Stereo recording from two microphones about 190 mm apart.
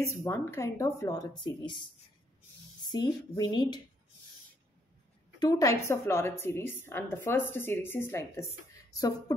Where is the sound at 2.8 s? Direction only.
20° left (ahead or behind).